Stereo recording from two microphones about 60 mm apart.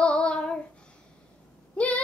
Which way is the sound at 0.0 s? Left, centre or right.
Left.